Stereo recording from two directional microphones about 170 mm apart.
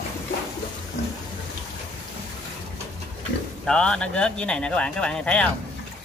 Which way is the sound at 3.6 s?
5° left (ahead or behind).